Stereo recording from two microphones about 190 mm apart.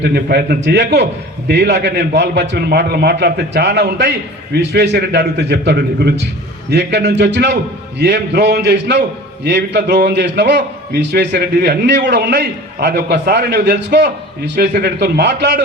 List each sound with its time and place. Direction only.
0.1 s a man's voice: 60° right (ahead or behind)